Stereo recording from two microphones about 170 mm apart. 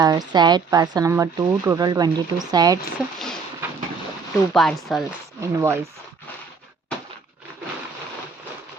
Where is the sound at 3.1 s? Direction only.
5° left (ahead or behind).